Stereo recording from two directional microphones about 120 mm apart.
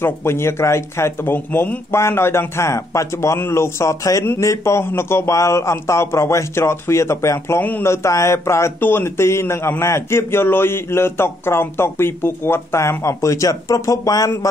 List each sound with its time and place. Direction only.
0.0 s speech: 20° left (ahead or behind)